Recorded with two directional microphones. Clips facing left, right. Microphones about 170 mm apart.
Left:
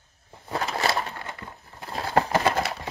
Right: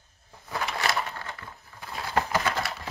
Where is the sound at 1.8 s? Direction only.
35° left (ahead or behind).